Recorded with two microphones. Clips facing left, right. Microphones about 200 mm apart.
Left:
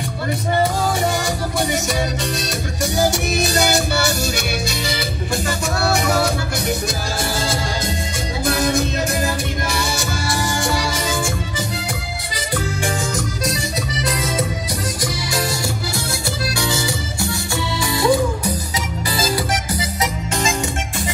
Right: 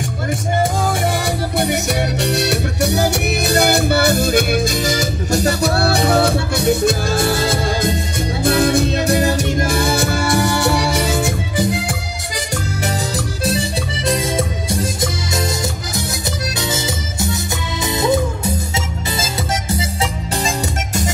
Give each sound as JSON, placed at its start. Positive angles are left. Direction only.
{"t": 1.6, "sound": "music", "side_deg": -65}
{"t": 8.7, "sound": "music", "side_deg": -35}
{"t": 13.5, "sound": "music", "side_deg": -30}
{"t": 16.7, "sound": "music", "side_deg": -20}